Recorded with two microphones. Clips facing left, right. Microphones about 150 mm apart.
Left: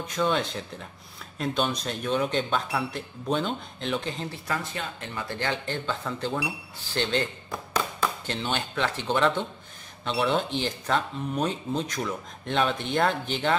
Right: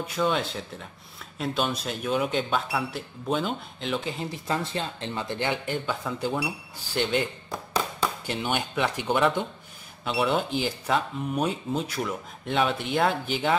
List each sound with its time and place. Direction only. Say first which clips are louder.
0.0 s speech: even; 5° right (ahead or behind)
4.5 s speech: right 4 dB; 25° right (ahead or behind)
8.3 s speech: right 2 dB; 10° right (ahead or behind)